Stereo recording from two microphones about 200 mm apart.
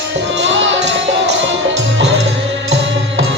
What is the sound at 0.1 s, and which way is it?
Music, 65° right (ahead or behind).